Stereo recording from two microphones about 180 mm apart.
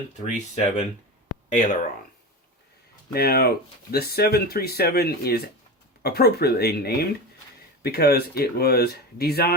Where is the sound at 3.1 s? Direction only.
60° left (ahead or behind).